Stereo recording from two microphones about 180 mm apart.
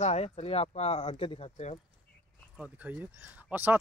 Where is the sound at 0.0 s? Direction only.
35° left (ahead or behind).